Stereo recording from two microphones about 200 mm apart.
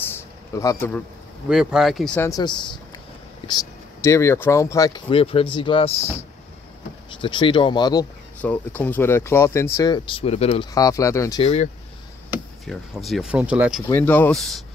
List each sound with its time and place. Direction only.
0.1 s a sound: 15° left (ahead or behind)
1.5 s speech: 5° right (ahead or behind)
2.2 s speech: 20° left (ahead or behind)
8.4 s speech: 10° left (ahead or behind); by 10.7 s 30° left (ahead or behind)
10.7 s speech: 15° left (ahead or behind)
11.4 s speech: 35° left (ahead or behind)
12.6 s speech: centre (ahead or behind)
13.9 s speech: 10° left (ahead or behind)